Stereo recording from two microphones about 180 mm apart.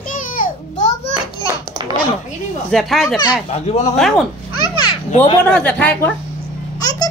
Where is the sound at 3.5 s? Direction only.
35° left (ahead or behind).